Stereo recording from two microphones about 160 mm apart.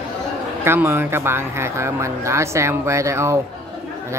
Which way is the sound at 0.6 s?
15° right (ahead or behind).